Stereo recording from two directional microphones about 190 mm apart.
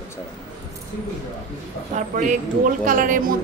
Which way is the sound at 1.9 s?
40° right (ahead or behind).